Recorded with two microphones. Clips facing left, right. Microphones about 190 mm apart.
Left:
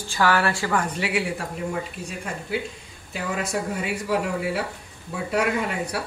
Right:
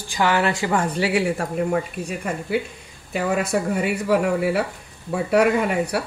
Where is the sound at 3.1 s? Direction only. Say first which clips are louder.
Right 6 dB; 60° right (ahead or behind).